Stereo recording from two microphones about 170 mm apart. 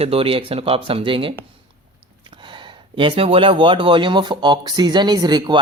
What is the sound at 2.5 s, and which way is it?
Speech, 30° right (ahead or behind).